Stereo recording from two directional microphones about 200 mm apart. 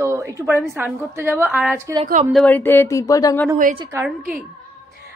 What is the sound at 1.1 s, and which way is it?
Speech, 10° right (ahead or behind).